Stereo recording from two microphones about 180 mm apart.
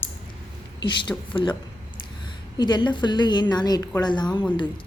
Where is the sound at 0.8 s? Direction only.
25° left (ahead or behind).